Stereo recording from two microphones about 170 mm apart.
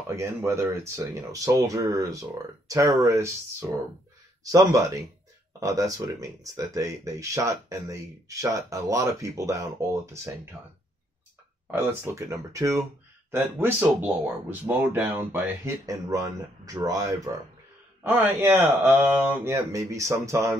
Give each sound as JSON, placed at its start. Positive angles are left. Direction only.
{"t": 0.0, "sound": "speech", "side_deg": -15}
{"t": 11.6, "sound": "speech", "side_deg": -15}